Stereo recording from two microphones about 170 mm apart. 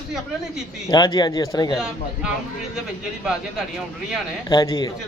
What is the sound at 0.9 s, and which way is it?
Speech, 25° left (ahead or behind).